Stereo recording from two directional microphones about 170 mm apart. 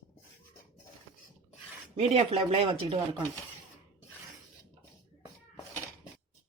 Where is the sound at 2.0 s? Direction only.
35° right (ahead or behind).